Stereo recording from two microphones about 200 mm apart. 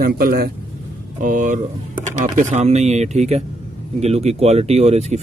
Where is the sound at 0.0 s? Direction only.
50° right (ahead or behind).